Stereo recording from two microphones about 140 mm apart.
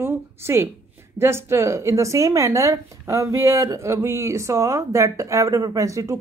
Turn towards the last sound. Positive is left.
turn(degrees=-25)  # may be behind; listen again after turning